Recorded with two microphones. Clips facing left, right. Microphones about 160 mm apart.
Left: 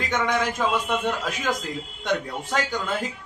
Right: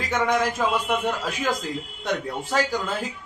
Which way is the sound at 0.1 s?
10° right (ahead or behind).